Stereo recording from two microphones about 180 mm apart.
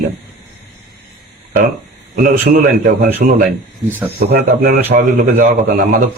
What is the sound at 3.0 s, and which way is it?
A man's voice, 55° right (ahead or behind).